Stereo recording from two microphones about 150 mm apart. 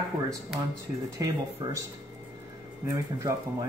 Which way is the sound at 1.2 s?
20° right (ahead or behind).